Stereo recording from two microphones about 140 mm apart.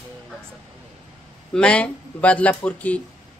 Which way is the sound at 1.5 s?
5° left (ahead or behind).